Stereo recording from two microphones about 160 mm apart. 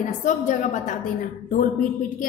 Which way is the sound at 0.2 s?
50° left (ahead or behind).